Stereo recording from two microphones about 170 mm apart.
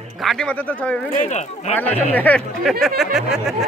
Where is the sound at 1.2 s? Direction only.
45° left (ahead or behind).